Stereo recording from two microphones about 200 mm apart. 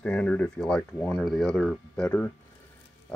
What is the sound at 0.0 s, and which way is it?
Speech, 5° left (ahead or behind).